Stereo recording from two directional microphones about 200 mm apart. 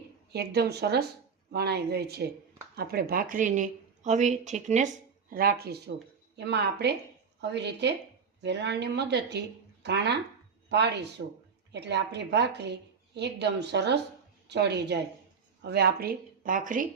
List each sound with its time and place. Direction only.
0.3 s a woman's voice: 55° right (ahead or behind); by 4.9 s 35° right (ahead or behind)
5.3 s a woman's voice: 50° right (ahead or behind)